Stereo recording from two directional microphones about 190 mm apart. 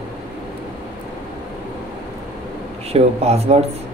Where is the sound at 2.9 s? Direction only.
35° right (ahead or behind).